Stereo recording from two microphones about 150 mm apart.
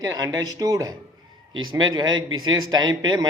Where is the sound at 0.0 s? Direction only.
25° right (ahead or behind).